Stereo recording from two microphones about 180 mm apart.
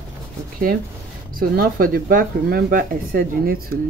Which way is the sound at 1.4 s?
50° right (ahead or behind).